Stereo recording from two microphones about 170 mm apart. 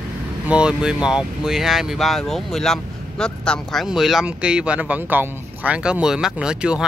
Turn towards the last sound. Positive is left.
turn(degrees=-5)  # may be behind; listen again after turning